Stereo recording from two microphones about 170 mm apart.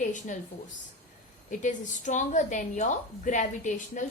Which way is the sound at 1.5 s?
45° left (ahead or behind).